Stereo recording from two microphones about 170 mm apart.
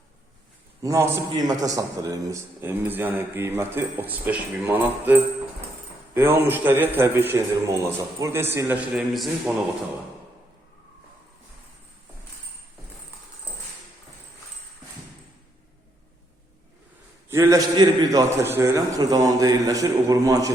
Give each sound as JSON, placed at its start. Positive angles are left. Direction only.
{"t": 0.8, "sound": "a man's voice", "side_deg": -20}
{"t": 8.9, "sound": "a man's voice", "side_deg": 0}
{"t": 17.2, "sound": "a man's voice", "side_deg": -15}